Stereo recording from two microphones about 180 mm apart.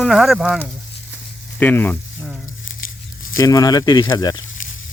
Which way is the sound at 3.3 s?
20° left (ahead or behind).